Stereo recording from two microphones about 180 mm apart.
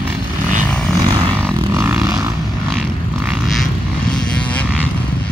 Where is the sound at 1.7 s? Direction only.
15° right (ahead or behind).